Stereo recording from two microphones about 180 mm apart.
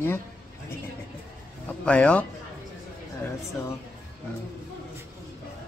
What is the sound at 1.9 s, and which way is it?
Speech, 5° left (ahead or behind).